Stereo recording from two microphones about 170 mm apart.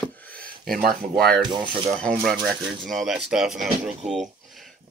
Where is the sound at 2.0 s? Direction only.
5° left (ahead or behind).